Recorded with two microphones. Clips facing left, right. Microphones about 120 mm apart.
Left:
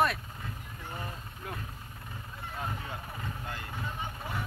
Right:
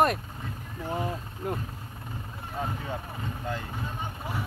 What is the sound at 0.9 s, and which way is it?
Vehicle, 90° right.